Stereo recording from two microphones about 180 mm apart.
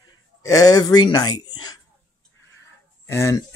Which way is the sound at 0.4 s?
20° left (ahead or behind).